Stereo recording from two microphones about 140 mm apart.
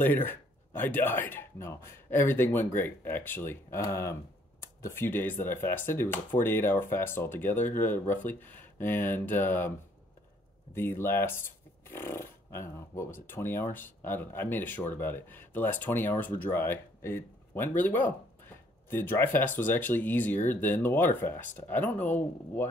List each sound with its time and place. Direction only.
0.0 s speech: 15° left (ahead or behind)
10.7 s speech: 15° left (ahead or behind)